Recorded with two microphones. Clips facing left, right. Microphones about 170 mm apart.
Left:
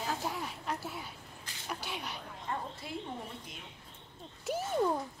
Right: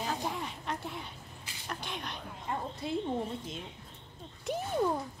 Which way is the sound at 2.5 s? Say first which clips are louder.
Right 2 dB; 15° right (ahead or behind).